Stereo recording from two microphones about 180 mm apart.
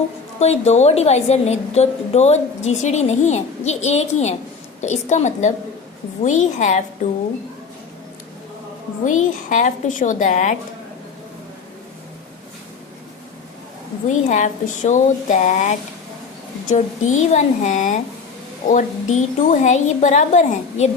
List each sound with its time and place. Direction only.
0.3 s a woman's voice: 35° left (ahead or behind)
9.0 s speech: 45° left (ahead or behind)
14.1 s a woman's voice: 45° left (ahead or behind)